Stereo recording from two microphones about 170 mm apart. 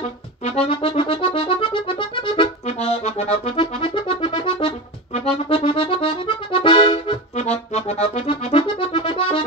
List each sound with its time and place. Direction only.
0.4 s accordion: 35° left (ahead or behind)